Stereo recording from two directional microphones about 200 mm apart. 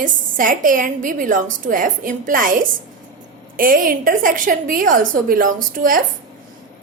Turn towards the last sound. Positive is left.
turn(degrees=-45)  # may be behind; listen again after turning